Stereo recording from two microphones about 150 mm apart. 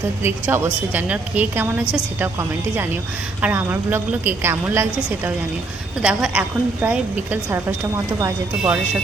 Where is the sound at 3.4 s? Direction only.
10° right (ahead or behind).